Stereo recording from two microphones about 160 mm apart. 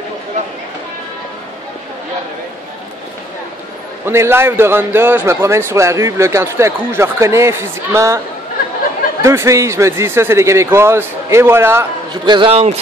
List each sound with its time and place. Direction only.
4.0 s a man's voice: 15° right (ahead or behind)
9.2 s a man's voice: 15° right (ahead or behind)
12.1 s a man's voice: 30° right (ahead or behind)